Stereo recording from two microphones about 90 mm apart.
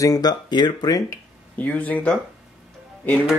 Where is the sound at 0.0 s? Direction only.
45° left (ahead or behind).